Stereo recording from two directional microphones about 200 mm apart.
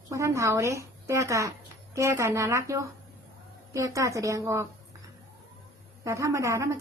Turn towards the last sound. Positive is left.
turn(degrees=-15)  # may be behind; listen again after turning